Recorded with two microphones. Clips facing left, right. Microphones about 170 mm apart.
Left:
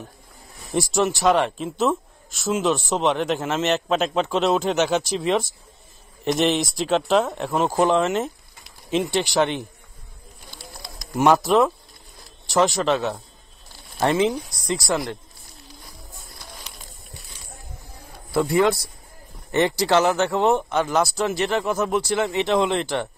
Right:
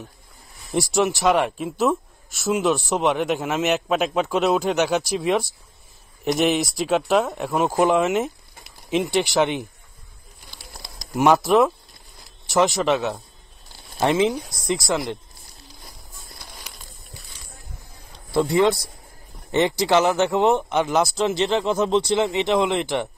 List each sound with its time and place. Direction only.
0.9 s speech: 15° right (ahead or behind)
11.1 s speech: 15° right (ahead or behind)
18.5 s speech: 20° right (ahead or behind)